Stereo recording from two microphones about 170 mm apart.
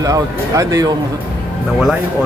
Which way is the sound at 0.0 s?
20° right (ahead or behind).